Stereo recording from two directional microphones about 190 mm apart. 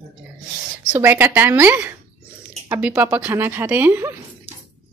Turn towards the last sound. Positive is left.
turn(degrees=-10)  # may be behind; listen again after turning